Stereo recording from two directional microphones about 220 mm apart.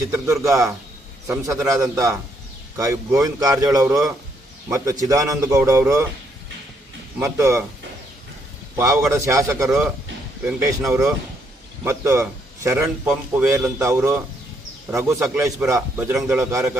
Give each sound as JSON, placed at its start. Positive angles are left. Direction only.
{"t": 0.1, "sound": "a man's voice", "side_deg": -15}
{"t": 7.2, "sound": "a man's voice", "side_deg": -15}
{"t": 8.7, "sound": "a man's voice", "side_deg": -15}